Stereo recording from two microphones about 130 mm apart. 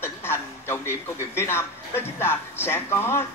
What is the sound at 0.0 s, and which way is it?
Speech, 20° left (ahead or behind).